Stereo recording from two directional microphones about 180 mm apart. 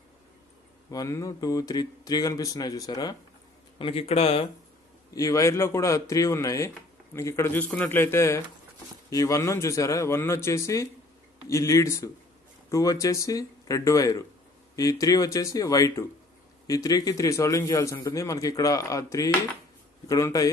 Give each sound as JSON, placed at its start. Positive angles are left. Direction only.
{"t": 0.8, "sound": "a man's voice", "side_deg": 15}
{"t": 3.7, "sound": "a man's voice", "side_deg": 30}
{"t": 5.1, "sound": "a man's voice", "side_deg": 20}